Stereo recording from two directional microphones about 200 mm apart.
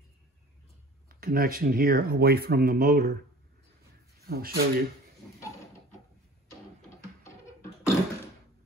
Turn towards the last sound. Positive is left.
turn(degrees=15)  # may be behind; listen again after turning